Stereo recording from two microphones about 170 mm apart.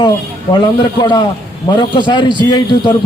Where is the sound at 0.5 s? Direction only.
25° left (ahead or behind).